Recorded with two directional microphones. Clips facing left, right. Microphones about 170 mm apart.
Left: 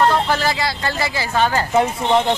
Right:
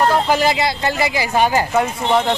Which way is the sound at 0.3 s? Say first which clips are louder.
Right 4 dB; 20° right (ahead or behind).